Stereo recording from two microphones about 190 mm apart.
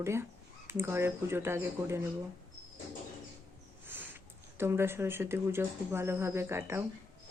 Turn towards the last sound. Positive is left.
turn(degrees=-15)  # may be behind; listen again after turning